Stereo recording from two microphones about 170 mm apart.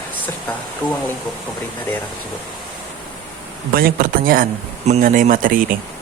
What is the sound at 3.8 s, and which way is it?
A man's voice, 55° right (ahead or behind).